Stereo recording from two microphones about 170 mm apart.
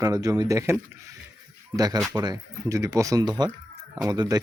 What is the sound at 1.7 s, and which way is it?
Speech, 20° right (ahead or behind).